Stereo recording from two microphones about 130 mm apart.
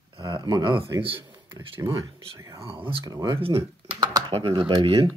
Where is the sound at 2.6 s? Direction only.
40° right (ahead or behind).